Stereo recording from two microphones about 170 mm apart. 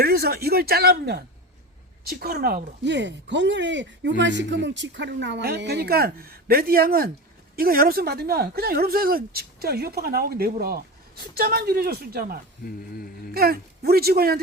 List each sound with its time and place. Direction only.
0.0 s speech: 65° right (ahead or behind)
12.6 s mantra: 60° left (ahead or behind)
13.3 s speech: 65° right (ahead or behind)